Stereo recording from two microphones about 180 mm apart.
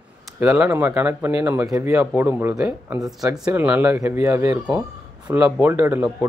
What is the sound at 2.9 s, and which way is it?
Speech, 20° right (ahead or behind).